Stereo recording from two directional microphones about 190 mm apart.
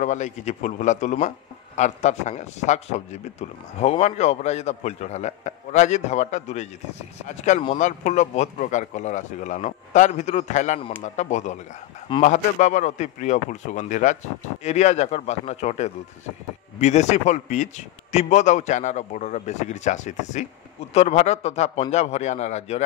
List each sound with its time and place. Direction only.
0.0 s a man's voice: 40° left (ahead or behind)